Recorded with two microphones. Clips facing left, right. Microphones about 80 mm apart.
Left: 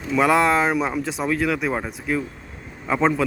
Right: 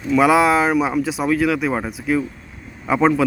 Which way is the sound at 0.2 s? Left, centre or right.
Centre.